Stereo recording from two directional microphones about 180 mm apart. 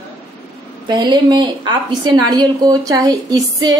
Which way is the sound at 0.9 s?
25° right (ahead or behind).